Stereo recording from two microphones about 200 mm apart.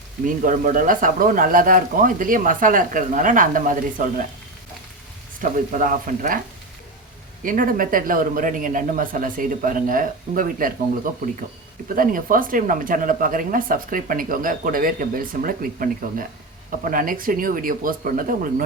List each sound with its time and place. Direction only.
0.3 s speech: 40° right (ahead or behind)
5.4 s speech: 40° right (ahead or behind)
7.4 s speech: 45° right (ahead or behind)